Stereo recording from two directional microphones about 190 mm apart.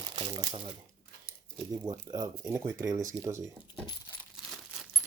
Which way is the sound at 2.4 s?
5° right (ahead or behind).